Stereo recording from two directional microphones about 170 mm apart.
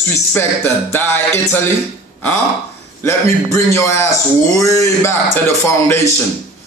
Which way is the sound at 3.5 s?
15° left (ahead or behind).